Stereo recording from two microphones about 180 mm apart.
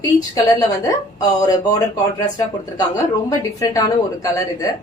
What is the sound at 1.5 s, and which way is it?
A woman's voice, 20° left (ahead or behind).